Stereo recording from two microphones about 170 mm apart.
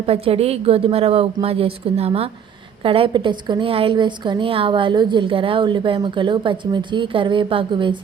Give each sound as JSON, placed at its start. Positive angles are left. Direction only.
{"t": 0.0, "sound": "a woman's voice", "side_deg": -35}